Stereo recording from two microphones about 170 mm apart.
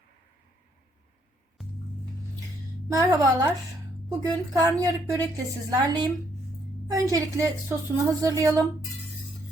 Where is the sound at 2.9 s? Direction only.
20° right (ahead or behind).